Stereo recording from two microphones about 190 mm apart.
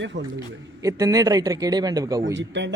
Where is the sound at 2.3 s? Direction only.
70° right (ahead or behind).